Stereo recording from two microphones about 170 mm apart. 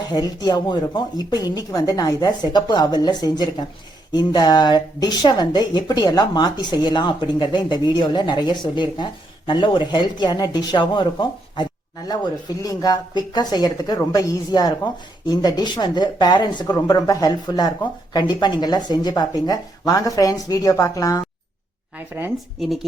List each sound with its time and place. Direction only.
0.1 s speech: 25° left (ahead or behind)
21.9 s speech: 10° right (ahead or behind)